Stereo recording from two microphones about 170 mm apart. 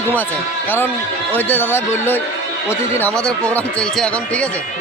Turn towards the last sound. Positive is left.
turn(degrees=5)  # may be behind; listen again after turning